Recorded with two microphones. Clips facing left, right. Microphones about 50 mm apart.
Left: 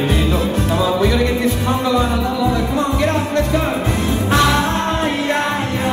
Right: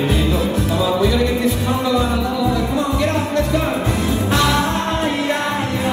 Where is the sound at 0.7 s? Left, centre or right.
Left.